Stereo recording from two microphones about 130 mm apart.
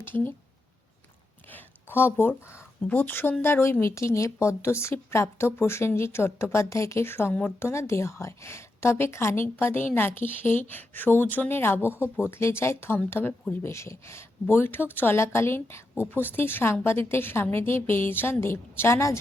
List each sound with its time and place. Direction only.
0.0 s speech: 15° left (ahead or behind)
1.5 s a sound: 15° left (ahead or behind)
2.1 s a woman's voice: 20° left (ahead or behind)